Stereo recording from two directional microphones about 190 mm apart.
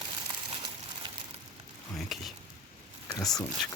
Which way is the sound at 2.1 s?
Centre (ahead or behind).